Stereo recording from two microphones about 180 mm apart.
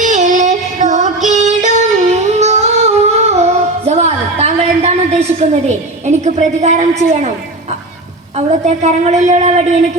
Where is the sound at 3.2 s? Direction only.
35° right (ahead or behind).